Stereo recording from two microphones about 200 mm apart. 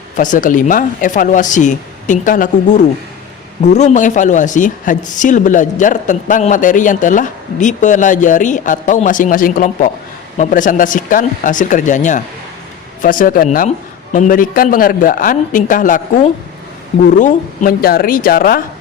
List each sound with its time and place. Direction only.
0.2 s a man's voice: 40° left (ahead or behind)